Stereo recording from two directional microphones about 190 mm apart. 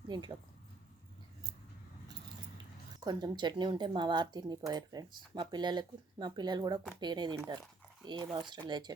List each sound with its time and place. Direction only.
0.1 s speech: 25° right (ahead or behind)
3.0 s speech: 20° right (ahead or behind)